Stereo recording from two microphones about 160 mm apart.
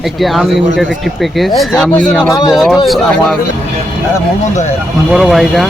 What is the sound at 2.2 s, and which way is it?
Speech, 20° left (ahead or behind).